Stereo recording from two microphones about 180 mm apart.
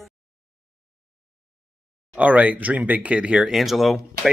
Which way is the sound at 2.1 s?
10° right (ahead or behind).